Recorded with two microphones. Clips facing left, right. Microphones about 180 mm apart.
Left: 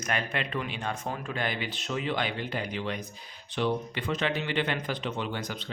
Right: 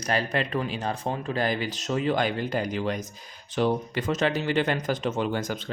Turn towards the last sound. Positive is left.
turn(degrees=-45)  # may be behind; listen again after turning